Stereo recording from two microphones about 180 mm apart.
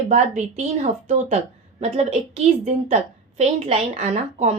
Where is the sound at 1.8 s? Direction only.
40° right (ahead or behind).